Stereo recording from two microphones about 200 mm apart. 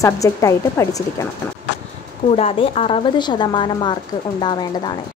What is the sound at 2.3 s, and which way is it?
A woman's voice, 30° left (ahead or behind).